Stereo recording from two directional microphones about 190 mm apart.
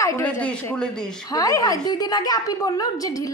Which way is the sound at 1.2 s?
20° left (ahead or behind).